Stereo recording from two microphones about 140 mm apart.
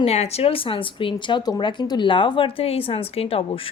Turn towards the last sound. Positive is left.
turn(degrees=40)  # may be behind; listen again after turning